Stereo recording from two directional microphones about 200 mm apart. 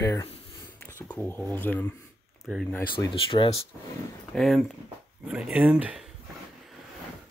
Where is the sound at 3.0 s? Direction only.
25° left (ahead or behind).